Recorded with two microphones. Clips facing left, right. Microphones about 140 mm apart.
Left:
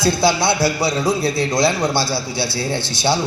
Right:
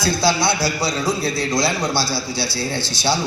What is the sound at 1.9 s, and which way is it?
A man's voice, 55° left (ahead or behind).